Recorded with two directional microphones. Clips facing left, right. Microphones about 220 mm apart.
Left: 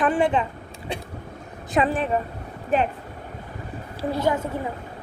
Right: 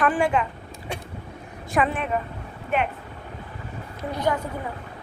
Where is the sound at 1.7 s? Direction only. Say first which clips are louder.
Left 2 dB; 30° left (ahead or behind).